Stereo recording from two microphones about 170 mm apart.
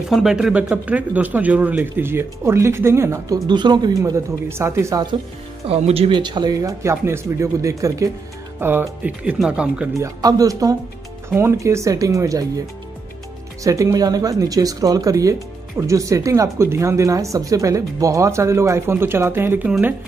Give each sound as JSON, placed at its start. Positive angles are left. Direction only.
{"t": 0.1, "sound": "speech", "side_deg": -5}
{"t": 3.4, "sound": "speech", "side_deg": -25}
{"t": 5.7, "sound": "speech", "side_deg": -35}
{"t": 9.9, "sound": "speech", "side_deg": -20}
{"t": 13.7, "sound": "speech", "side_deg": -20}